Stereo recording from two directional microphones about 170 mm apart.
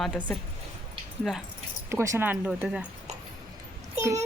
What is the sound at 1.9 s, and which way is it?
Speech, 15° right (ahead or behind).